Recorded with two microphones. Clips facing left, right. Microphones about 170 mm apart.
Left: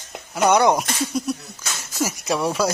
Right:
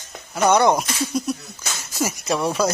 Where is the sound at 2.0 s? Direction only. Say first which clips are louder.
Even; 5° left (ahead or behind).